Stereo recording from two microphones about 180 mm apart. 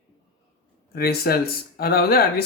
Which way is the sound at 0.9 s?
60° left (ahead or behind).